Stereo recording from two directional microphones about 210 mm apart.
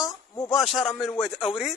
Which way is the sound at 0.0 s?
15° left (ahead or behind).